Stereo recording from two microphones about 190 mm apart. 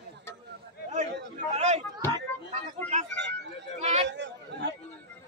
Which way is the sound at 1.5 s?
35° right (ahead or behind).